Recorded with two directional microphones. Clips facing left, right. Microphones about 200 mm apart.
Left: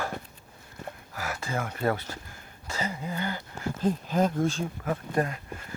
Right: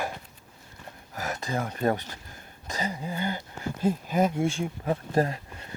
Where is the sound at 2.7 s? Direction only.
15° right (ahead or behind).